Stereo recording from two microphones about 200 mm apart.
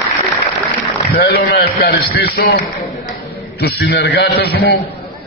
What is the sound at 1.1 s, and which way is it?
A man's voice, 55° left (ahead or behind).